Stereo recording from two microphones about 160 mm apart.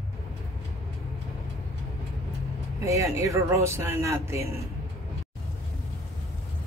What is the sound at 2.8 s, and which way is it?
A man's voice, 20° right (ahead or behind).